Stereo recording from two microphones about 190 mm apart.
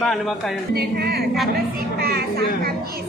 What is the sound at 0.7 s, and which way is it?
Music, 55° right (ahead or behind).